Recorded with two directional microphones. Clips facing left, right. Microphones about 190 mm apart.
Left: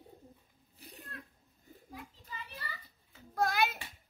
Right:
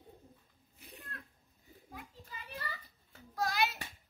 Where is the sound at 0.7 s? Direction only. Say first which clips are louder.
Left 1 dB; 35° left (ahead or behind).